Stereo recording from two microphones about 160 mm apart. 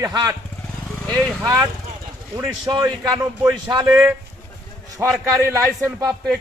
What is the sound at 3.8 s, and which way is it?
Speech, 5° right (ahead or behind).